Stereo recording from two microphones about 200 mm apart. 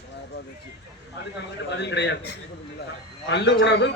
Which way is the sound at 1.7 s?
60° left (ahead or behind).